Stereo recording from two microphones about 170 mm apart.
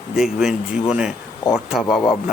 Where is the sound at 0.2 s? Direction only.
Centre (ahead or behind).